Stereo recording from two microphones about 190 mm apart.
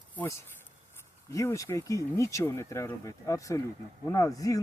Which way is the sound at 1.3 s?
15° left (ahead or behind).